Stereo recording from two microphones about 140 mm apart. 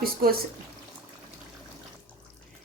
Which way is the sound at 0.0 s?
90° right.